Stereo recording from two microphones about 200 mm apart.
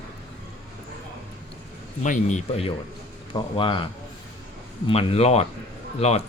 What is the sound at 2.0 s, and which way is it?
Speech, 35° left (ahead or behind).